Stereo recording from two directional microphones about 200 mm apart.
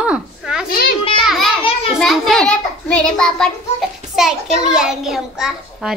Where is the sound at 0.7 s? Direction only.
50° left (ahead or behind).